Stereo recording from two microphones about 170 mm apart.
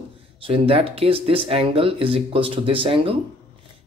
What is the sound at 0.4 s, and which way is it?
Speech, 35° right (ahead or behind).